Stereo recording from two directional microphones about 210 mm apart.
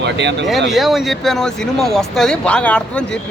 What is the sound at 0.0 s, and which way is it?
Speech, 55° right (ahead or behind).